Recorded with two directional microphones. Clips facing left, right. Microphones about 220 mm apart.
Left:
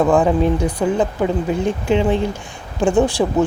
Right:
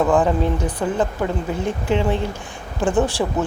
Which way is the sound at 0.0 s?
10° left (ahead or behind).